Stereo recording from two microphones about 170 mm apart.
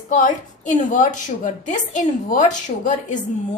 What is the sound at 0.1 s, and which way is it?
A woman's voice, 50° left (ahead or behind).